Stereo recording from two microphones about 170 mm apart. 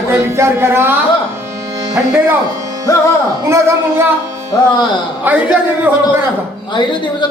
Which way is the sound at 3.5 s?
15° right (ahead or behind).